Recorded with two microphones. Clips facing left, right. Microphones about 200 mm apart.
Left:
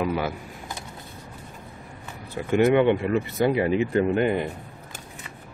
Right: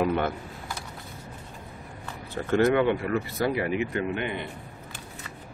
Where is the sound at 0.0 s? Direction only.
5° left (ahead or behind).